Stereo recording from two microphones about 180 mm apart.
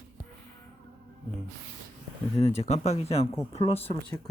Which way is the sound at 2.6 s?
40° left (ahead or behind).